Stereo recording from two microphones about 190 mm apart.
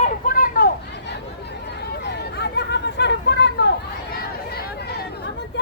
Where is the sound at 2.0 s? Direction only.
60° left (ahead or behind).